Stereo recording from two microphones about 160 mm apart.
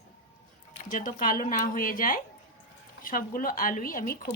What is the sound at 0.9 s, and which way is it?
Speech, 55° left (ahead or behind).